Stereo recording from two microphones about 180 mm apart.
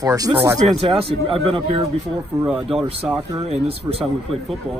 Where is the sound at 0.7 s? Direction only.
35° right (ahead or behind).